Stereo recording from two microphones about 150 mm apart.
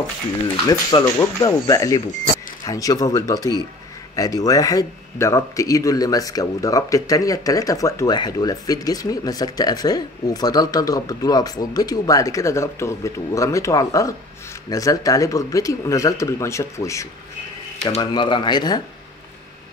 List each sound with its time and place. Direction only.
0.7 s a man's voice: 25° left (ahead or behind)
17.8 s speech: 35° left (ahead or behind)